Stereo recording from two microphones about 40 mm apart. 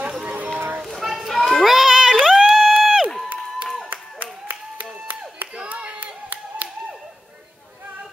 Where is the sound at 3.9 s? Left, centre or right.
Right.